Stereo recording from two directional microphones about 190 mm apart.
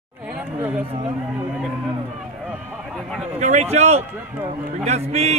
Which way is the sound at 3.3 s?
35° right (ahead or behind).